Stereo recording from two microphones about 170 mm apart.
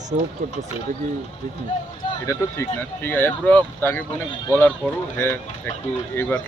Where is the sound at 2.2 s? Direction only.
15° left (ahead or behind).